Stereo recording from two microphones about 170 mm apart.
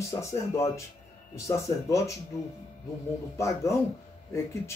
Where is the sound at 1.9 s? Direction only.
20° left (ahead or behind).